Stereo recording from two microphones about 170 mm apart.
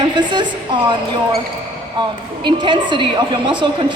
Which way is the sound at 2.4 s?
25° right (ahead or behind).